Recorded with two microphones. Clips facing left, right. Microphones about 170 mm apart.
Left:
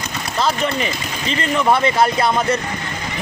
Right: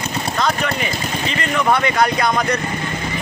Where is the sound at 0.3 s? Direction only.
30° left (ahead or behind).